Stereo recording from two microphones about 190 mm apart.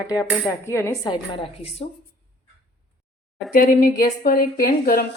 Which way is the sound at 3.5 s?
50° left (ahead or behind).